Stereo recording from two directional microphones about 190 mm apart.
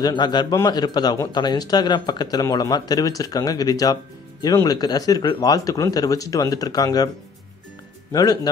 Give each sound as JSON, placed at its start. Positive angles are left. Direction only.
{"t": 0.0, "sound": "speech", "side_deg": 20}
{"t": 8.1, "sound": "speech", "side_deg": 20}